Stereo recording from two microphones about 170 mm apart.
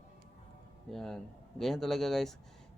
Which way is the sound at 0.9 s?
Centre (ahead or behind).